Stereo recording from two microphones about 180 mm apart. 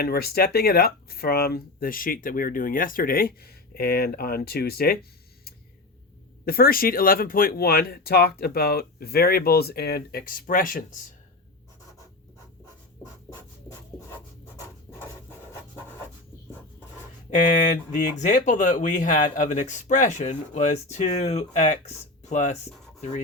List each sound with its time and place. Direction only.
0.0 s speech: 60° left (ahead or behind)
6.4 s speech: 55° left (ahead or behind)
17.3 s speech: 45° left (ahead or behind)